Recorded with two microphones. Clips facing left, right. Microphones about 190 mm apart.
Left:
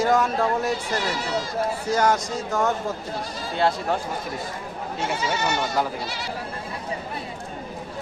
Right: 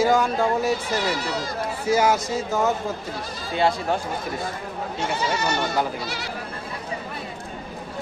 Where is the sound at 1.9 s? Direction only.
5° right (ahead or behind).